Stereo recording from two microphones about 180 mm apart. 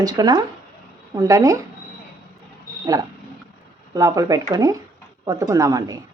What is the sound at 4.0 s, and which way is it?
Speech, 20° right (ahead or behind).